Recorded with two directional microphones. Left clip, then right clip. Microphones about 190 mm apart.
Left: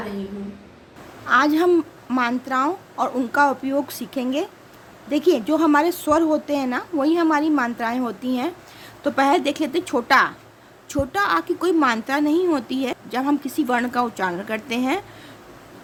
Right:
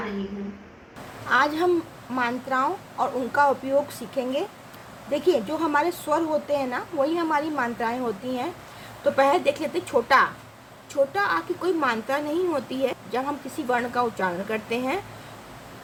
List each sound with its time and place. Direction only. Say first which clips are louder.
1.3 s a woman's voice: left 4 dB; 55° left (ahead or behind)